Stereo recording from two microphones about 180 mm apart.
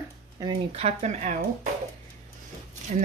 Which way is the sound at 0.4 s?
30° right (ahead or behind).